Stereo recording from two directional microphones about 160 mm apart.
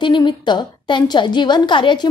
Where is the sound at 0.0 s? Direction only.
30° left (ahead or behind).